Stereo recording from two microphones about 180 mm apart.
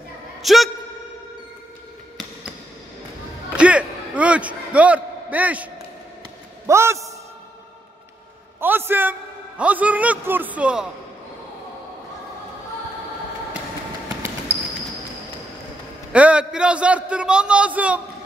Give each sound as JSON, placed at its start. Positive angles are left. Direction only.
{"t": 0.4, "sound": "speech", "side_deg": 0}
{"t": 3.5, "sound": "a sound", "side_deg": -5}
{"t": 6.6, "sound": "a man's voice", "side_deg": -15}
{"t": 8.5, "sound": "a man's voice", "side_deg": -10}
{"t": 16.1, "sound": "a man's voice", "side_deg": -5}